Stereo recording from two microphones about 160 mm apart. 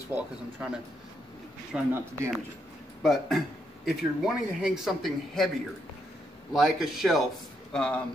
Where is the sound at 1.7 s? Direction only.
5° right (ahead or behind).